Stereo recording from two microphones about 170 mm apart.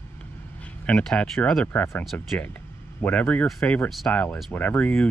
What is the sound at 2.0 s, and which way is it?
Speech, centre (ahead or behind).